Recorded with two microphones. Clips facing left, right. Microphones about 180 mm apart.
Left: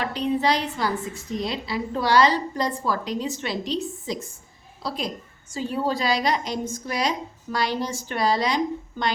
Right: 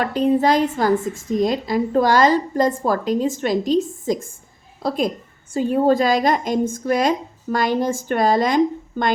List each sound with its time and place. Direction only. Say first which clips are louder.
0.0 s a woman's voice: right 6 dB; 45° right (ahead or behind)